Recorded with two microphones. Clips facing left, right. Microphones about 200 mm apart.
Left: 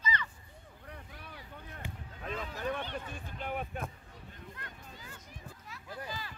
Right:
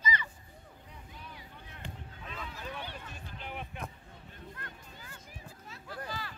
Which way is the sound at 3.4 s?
45° left (ahead or behind).